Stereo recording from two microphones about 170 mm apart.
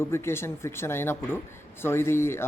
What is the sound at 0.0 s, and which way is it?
A man's voice, 15° left (ahead or behind).